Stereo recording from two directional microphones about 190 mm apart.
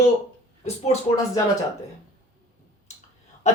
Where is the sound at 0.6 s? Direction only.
35° left (ahead or behind).